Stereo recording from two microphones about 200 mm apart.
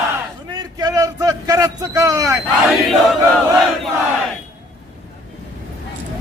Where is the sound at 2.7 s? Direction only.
Centre (ahead or behind).